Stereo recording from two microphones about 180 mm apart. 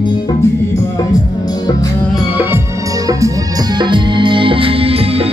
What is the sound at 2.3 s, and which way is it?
Music, 10° right (ahead or behind).